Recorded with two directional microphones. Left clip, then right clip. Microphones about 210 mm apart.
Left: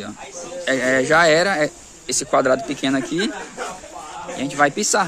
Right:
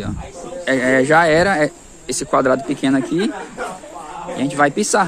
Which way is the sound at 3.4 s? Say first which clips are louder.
Right 3 dB; 45° left (ahead or behind).